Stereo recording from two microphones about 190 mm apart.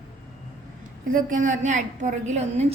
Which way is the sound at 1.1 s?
45° right (ahead or behind).